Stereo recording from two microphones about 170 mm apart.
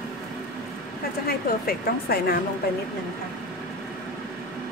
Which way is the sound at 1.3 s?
60° left (ahead or behind).